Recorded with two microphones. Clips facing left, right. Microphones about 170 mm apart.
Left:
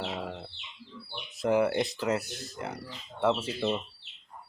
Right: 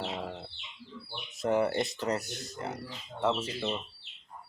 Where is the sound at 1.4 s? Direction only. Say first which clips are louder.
Left 2 dB; centre (ahead or behind).